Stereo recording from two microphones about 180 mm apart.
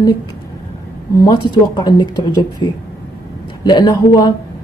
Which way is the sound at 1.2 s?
25° left (ahead or behind).